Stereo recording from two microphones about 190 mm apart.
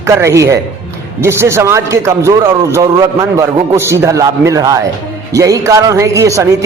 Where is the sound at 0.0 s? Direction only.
15° right (ahead or behind).